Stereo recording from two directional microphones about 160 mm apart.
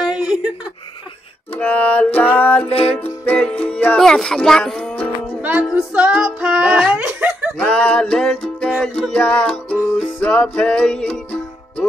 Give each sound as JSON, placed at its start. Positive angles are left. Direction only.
{"t": 0.0, "sound": "a sound", "side_deg": -5}
{"t": 1.6, "sound": "music", "side_deg": 10}
{"t": 2.6, "sound": "music", "side_deg": 35}
{"t": 3.0, "sound": "music", "side_deg": 10}
{"t": 5.4, "sound": "music", "side_deg": -10}
{"t": 7.5, "sound": "music", "side_deg": 5}